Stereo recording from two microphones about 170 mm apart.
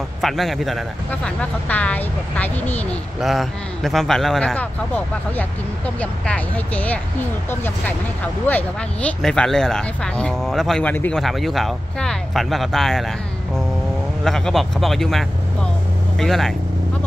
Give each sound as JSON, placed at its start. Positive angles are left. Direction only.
{"t": 0.2, "sound": "speech", "side_deg": 0}
{"t": 14.2, "sound": "speech", "side_deg": 0}